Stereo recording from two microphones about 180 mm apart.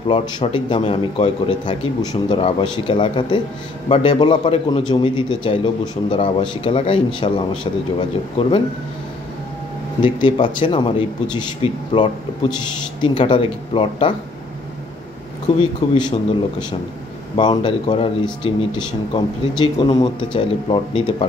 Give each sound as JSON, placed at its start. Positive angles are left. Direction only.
{"t": 0.5, "sound": "a man's voice", "side_deg": 30}
{"t": 10.0, "sound": "a man's voice", "side_deg": 25}
{"t": 15.4, "sound": "a man's voice", "side_deg": 25}
{"t": 17.4, "sound": "a man's voice", "side_deg": 25}